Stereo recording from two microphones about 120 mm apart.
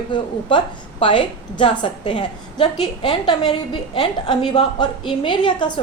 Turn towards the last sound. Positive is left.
turn(degrees=40)  # may be behind; listen again after turning